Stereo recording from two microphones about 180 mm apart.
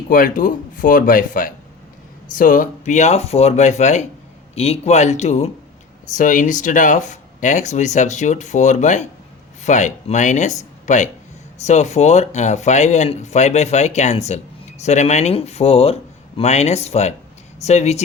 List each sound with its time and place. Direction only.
0.1 s speech: 50° left (ahead or behind)